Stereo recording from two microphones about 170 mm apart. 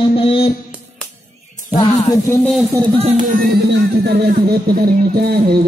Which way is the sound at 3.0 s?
50° right (ahead or behind).